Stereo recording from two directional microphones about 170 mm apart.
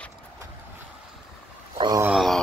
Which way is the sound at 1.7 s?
25° right (ahead or behind).